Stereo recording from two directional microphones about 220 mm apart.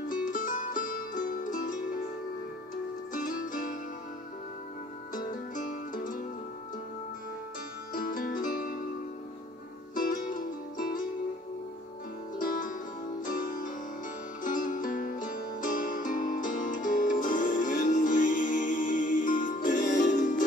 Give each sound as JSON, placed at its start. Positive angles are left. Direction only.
{"t": 0.1, "sound": "music", "side_deg": 40}
{"t": 3.1, "sound": "music", "side_deg": 35}
{"t": 5.1, "sound": "music", "side_deg": 40}
{"t": 7.9, "sound": "music", "side_deg": 40}
{"t": 9.9, "sound": "music", "side_deg": 40}
{"t": 12.4, "sound": "music", "side_deg": 40}